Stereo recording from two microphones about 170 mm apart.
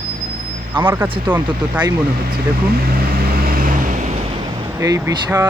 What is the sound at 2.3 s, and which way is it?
Vehicle, 65° right (ahead or behind).